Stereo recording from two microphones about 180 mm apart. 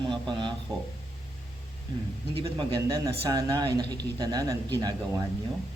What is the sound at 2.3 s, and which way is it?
Speech, 25° right (ahead or behind).